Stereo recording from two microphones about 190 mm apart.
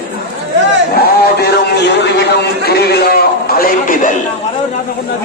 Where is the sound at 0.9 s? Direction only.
55° left (ahead or behind).